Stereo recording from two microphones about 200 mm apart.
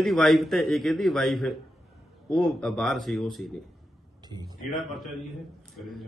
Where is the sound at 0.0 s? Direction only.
Centre (ahead or behind).